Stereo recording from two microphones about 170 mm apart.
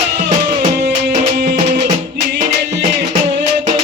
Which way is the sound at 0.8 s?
80° right.